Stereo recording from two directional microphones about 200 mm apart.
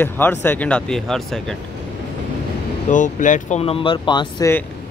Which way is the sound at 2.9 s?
40° left (ahead or behind).